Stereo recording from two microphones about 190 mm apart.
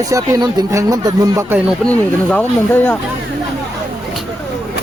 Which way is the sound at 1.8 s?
5° left (ahead or behind).